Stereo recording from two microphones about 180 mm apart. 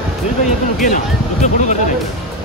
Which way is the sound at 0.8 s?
40° left (ahead or behind).